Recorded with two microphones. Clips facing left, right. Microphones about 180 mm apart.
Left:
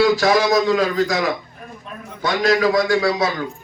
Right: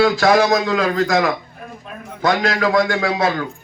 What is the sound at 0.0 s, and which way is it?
A man's voice, 50° right (ahead or behind).